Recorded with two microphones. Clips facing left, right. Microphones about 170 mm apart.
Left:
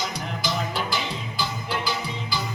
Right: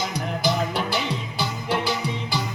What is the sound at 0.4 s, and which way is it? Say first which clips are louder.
Music: right 4 dB; 65° right (ahead or behind).